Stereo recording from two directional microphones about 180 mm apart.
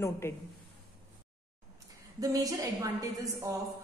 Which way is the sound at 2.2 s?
20° right (ahead or behind).